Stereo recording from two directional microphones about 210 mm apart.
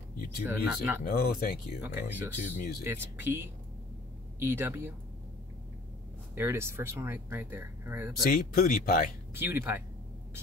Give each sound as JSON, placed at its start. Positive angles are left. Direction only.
{"t": 0.5, "sound": "speech", "side_deg": -10}
{"t": 1.0, "sound": "speech", "side_deg": 45}
{"t": 1.8, "sound": "speech", "side_deg": -10}
{"t": 2.3, "sound": "speech", "side_deg": 35}
{"t": 2.8, "sound": "speech", "side_deg": -10}
{"t": 4.4, "sound": "speech", "side_deg": -10}
{"t": 6.3, "sound": "speech", "side_deg": -10}
{"t": 8.2, "sound": "speech", "side_deg": 45}
{"t": 9.4, "sound": "speech", "side_deg": -10}